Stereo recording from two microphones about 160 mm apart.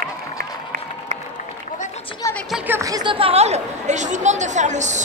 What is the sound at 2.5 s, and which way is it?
Chatter, 15° right (ahead or behind).